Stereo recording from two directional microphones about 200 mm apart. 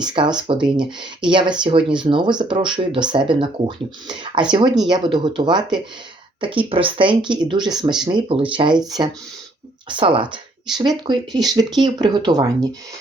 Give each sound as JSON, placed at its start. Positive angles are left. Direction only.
{"t": 0.0, "sound": "speech", "side_deg": -20}